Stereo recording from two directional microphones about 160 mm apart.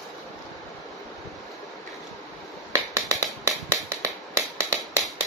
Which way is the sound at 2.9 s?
20° right (ahead or behind).